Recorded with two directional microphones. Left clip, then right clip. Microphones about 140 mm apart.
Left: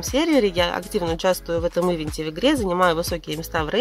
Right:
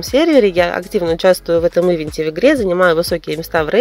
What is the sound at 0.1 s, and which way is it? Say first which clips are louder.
Speech: right 8 dB; 25° right (ahead or behind).